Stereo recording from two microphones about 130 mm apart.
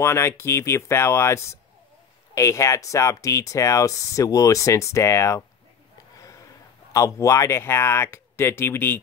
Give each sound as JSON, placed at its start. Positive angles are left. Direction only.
{"t": 0.0, "sound": "speech", "side_deg": 20}
{"t": 6.1, "sound": "a sound", "side_deg": 25}
{"t": 6.9, "sound": "speech", "side_deg": 25}